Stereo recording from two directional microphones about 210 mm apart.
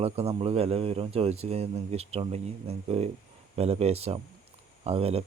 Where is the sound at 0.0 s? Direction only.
30° right (ahead or behind).